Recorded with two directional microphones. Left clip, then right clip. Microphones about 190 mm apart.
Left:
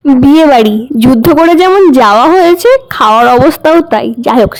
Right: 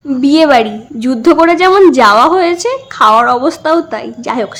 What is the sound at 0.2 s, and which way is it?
A woman's voice, 50° left (ahead or behind).